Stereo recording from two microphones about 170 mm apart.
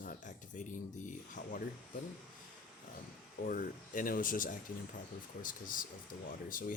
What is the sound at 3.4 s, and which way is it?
Speech, 55° left (ahead or behind).